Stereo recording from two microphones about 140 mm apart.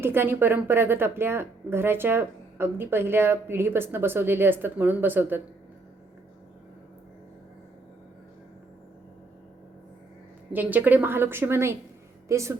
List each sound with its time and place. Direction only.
0.0 s speech: 15° right (ahead or behind)
10.5 s speech: 10° right (ahead or behind)